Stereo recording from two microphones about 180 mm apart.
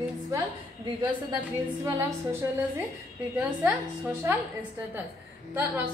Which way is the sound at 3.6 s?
10° right (ahead or behind).